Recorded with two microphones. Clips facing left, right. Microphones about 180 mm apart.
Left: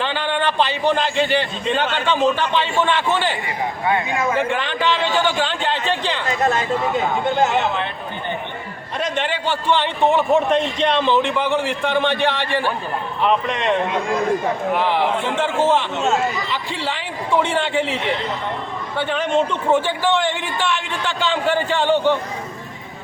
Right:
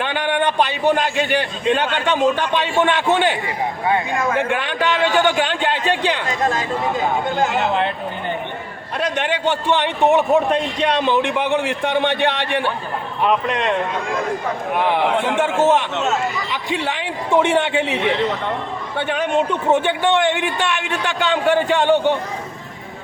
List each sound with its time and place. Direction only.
0.0 s a man's voice: 15° right (ahead or behind)
4.4 s a man's voice: 15° right (ahead or behind)
9.0 s a man's voice: 15° right (ahead or behind)
13.2 s a man's voice: 5° right (ahead or behind)
15.6 s a man's voice: 15° right (ahead or behind)